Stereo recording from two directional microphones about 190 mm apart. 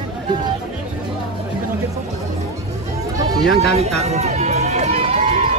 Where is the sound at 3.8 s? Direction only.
35° right (ahead or behind).